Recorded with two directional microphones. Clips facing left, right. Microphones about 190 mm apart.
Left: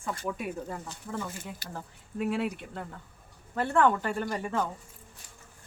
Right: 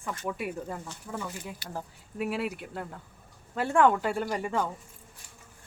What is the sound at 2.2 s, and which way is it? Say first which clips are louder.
Speech: left 1 dB; 5° right (ahead or behind).